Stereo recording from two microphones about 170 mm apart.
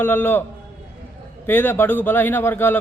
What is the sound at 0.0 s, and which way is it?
Speech, 10° left (ahead or behind).